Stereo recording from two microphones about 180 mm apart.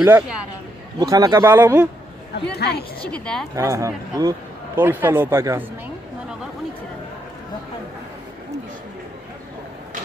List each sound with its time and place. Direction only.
0.0 s a man's voice: 10° right (ahead or behind)
2.5 s a woman's voice: 65° left (ahead or behind)
3.1 s a woman's voice: 5° left (ahead or behind)
3.5 s a man's voice: 15° right (ahead or behind)